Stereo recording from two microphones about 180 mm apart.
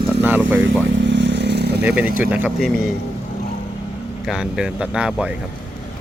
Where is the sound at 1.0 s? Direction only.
80° right.